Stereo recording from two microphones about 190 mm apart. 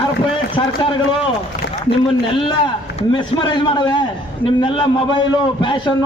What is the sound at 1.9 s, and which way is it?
A man's voice, 25° left (ahead or behind).